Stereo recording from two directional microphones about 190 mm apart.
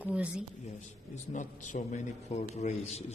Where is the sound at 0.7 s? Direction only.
40° left (ahead or behind).